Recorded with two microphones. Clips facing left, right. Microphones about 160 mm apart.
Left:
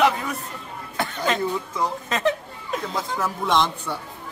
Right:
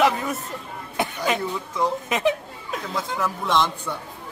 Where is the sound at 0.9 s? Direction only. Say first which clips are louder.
Even; 15° right (ahead or behind).